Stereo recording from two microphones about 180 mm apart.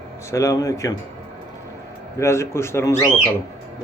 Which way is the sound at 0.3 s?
15° left (ahead or behind).